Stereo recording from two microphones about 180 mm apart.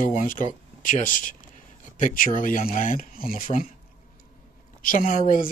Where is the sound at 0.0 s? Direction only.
45° left (ahead or behind).